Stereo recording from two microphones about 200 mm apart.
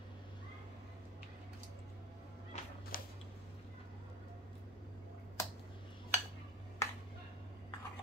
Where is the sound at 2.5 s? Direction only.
35° left (ahead or behind).